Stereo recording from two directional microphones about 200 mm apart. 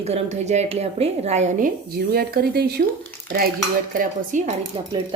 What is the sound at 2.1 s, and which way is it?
Speech, 50° right (ahead or behind).